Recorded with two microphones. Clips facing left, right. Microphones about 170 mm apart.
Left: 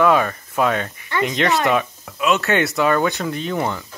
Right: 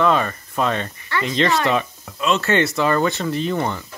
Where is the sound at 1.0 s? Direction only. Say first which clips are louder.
Left 3 dB; 20° left (ahead or behind).